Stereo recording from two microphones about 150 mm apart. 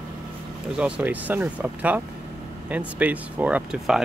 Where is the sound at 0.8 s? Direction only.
10° right (ahead or behind).